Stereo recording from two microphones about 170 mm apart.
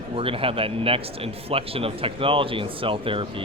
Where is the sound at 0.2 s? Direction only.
30° right (ahead or behind).